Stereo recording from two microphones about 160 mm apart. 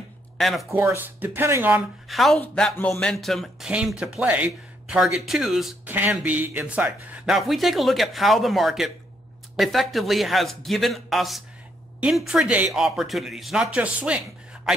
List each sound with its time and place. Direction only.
0.4 s speech: centre (ahead or behind)
0.7 s speech: 15° right (ahead or behind)
2.0 s speech: centre (ahead or behind)